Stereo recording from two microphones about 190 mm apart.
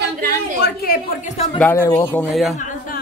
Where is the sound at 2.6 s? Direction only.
40° left (ahead or behind).